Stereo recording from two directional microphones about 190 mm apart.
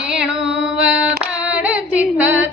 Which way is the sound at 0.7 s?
5° right (ahead or behind).